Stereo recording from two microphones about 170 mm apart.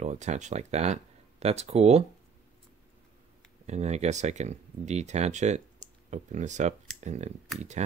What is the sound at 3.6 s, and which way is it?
Speech, 40° right (ahead or behind).